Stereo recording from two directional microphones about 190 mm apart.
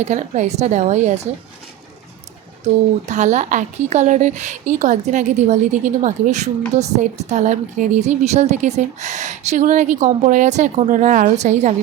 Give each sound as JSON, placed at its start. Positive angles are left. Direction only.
{"t": 0.0, "sound": "a woman's voice", "side_deg": -35}
{"t": 3.1, "sound": "a woman's voice", "side_deg": -40}